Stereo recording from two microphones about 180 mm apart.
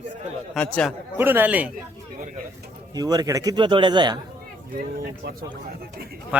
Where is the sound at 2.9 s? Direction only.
20° right (ahead or behind).